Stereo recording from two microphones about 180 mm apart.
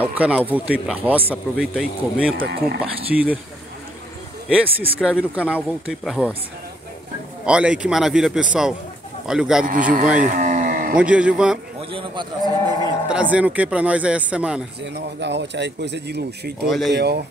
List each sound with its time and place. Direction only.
0.0 s a man's voice: 5° right (ahead or behind)
2.3 s speech: 60° right (ahead or behind)
3.1 s a man's voice: 5° right (ahead or behind)
4.5 s a man's voice: 5° right (ahead or behind)
7.4 s a man's voice: 5° right (ahead or behind)
10.2 s cattle: 45° right (ahead or behind)
11.0 s speech: 5° right (ahead or behind)
11.9 s speech: 25° right (ahead or behind)
13.1 s speech: 10° right (ahead or behind)
14.8 s speech: 70° right (ahead or behind)
16.6 s a man's voice: centre (ahead or behind)
16.9 s speech: 65° right (ahead or behind)